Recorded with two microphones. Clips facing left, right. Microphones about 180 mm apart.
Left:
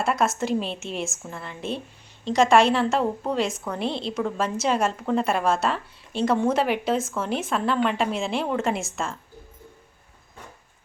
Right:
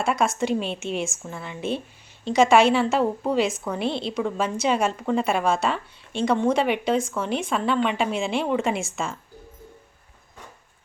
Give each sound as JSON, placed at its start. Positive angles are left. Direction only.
{"t": 0.0, "sound": "a woman's voice", "side_deg": 0}